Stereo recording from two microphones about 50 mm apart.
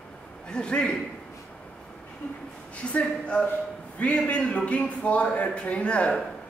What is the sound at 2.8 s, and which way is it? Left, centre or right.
A man's voice, left.